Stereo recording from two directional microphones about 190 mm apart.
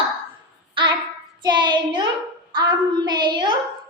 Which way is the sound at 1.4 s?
25° right (ahead or behind).